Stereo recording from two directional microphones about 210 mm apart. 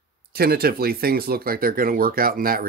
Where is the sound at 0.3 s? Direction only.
45° right (ahead or behind).